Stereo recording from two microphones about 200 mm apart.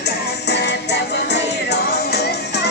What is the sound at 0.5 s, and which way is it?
Music, 55° left (ahead or behind).